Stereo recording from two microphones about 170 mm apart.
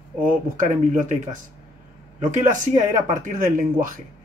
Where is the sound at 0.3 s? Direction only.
50° right (ahead or behind).